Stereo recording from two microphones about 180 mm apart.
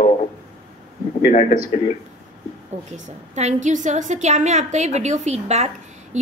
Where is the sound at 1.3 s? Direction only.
45° left (ahead or behind).